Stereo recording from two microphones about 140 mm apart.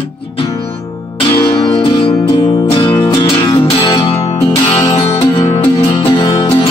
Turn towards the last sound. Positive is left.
turn(degrees=40)  # may be behind; listen again after turning